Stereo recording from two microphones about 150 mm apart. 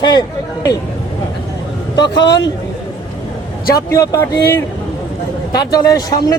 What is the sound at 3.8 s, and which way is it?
A man's voice, 20° left (ahead or behind).